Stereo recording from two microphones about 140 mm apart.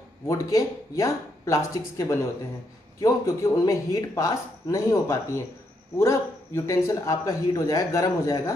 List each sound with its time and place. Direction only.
0.3 s speech: 25° left (ahead or behind)